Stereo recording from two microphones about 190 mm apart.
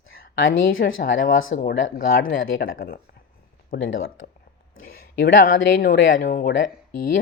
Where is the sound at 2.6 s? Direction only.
90° left.